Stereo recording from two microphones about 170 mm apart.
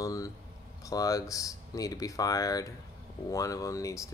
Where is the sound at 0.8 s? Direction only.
20° left (ahead or behind).